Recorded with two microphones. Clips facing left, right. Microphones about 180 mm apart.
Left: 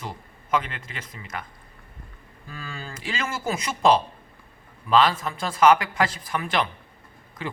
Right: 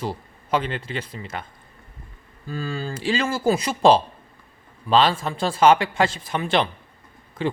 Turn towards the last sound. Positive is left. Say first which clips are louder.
# right 8 dB
turn(degrees=-30)  # may be behind; listen again after turning